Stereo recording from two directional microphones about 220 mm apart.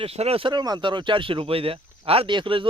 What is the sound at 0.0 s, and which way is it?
Speech, 25° right (ahead or behind).